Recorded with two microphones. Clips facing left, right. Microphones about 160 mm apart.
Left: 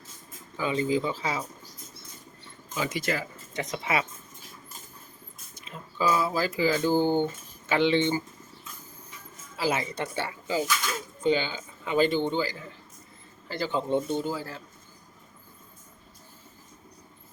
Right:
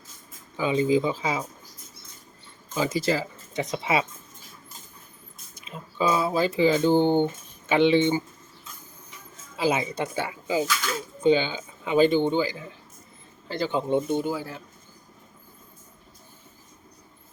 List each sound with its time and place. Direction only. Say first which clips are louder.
0.5 s a man's voice: right 4 dB; 15° right (ahead or behind)
2.7 s speech: right 5 dB; 30° right (ahead or behind)
5.6 s speech: right 2 dB; 20° right (ahead or behind)
9.6 s a man's voice: right 3 dB; 20° right (ahead or behind)